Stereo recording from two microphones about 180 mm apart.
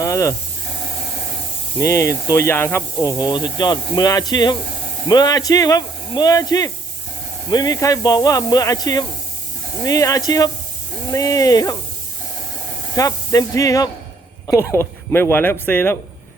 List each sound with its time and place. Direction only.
0.0 s snake: 20° left (ahead or behind)
1.8 s speech: 15° left (ahead or behind)
13.0 s speech: 20° left (ahead or behind)